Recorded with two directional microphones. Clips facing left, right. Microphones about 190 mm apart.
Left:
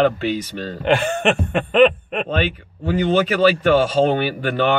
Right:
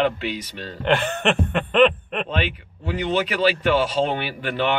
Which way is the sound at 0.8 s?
10° left (ahead or behind).